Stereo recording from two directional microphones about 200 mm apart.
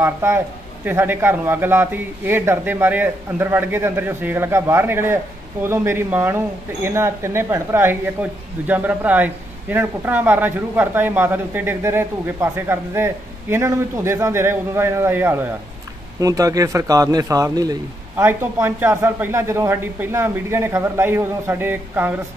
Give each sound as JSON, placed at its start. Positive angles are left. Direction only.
{"t": 0.0, "sound": "a man's voice", "side_deg": -15}